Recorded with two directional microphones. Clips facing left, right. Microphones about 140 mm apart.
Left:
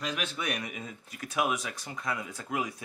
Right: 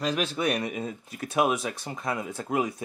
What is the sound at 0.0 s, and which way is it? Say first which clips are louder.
Speech: right 7 dB; 35° right (ahead or behind).